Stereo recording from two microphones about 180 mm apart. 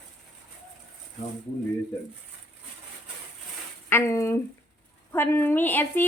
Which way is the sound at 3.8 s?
15° left (ahead or behind).